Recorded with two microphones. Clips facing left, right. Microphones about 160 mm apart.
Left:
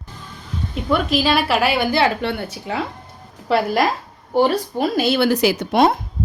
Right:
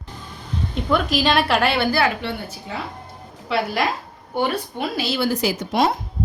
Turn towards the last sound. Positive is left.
turn(degrees=55)  # may be behind; listen again after turning